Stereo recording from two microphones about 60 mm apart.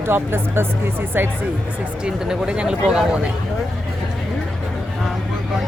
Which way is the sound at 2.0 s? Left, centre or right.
Centre.